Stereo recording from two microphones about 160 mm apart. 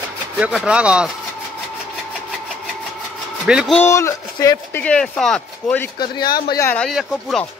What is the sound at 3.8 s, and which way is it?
Speech, 15° left (ahead or behind).